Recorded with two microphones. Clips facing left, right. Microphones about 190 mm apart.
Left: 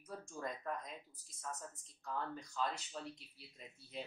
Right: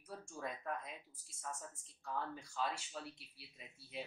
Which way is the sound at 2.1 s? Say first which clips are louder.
Left 1 dB; 5° right (ahead or behind).